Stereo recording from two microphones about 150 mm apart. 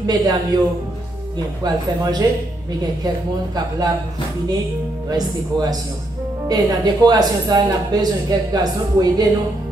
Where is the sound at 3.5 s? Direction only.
25° right (ahead or behind).